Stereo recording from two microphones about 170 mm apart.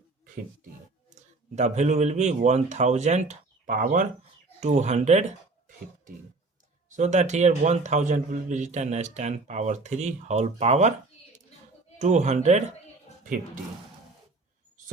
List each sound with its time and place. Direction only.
1.5 s speech: 45° right (ahead or behind)
6.9 s speech: 45° right (ahead or behind)
11.9 s speech: 45° right (ahead or behind)